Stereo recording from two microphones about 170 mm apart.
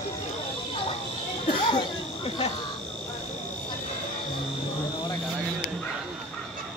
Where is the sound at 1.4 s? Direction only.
35° left (ahead or behind).